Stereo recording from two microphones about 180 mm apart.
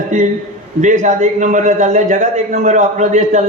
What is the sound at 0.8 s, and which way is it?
A man's voice, 45° right (ahead or behind).